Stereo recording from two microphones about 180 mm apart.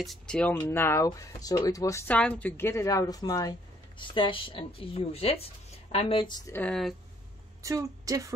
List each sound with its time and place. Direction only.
0.0 s speech: 5° left (ahead or behind); by 6.5 s 25° left (ahead or behind)
6.5 s speech: 5° left (ahead or behind)
7.6 s a woman's voice: 15° right (ahead or behind)